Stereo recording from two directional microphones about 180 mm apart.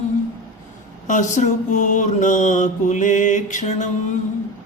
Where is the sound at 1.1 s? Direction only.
45° left (ahead or behind).